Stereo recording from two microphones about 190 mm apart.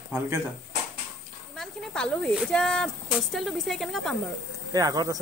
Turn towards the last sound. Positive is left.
turn(degrees=-20)  # may be behind; listen again after turning